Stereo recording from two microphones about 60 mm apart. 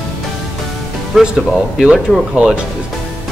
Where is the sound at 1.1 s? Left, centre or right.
Centre.